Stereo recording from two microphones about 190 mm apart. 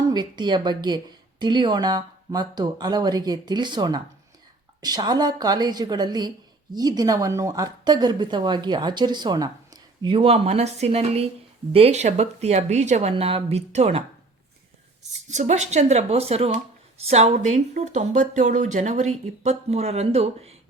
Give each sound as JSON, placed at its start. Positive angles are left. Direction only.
{"t": 0.1, "sound": "speech", "side_deg": -25}
{"t": 15.3, "sound": "speech", "side_deg": -40}